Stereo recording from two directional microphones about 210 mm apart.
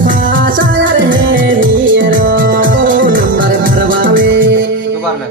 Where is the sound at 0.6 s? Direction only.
65° right (ahead or behind).